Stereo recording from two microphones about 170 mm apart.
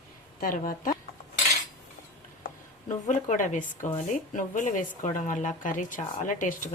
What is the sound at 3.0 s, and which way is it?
Speech, 50° left (ahead or behind).